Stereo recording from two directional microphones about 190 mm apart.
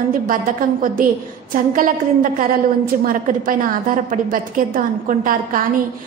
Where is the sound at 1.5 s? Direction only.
45° right (ahead or behind).